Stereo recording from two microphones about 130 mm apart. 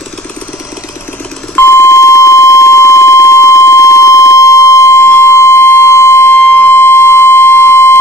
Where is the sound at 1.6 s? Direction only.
20° left (ahead or behind).